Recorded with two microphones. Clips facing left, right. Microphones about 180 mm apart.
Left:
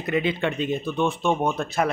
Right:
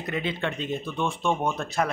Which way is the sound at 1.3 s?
20° left (ahead or behind).